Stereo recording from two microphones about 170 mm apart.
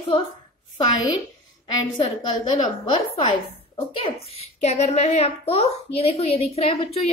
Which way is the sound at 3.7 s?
35° left (ahead or behind).